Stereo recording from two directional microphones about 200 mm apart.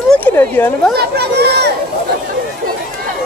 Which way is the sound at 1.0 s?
55° right (ahead or behind).